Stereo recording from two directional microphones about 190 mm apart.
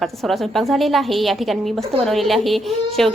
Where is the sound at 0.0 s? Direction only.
Centre (ahead or behind).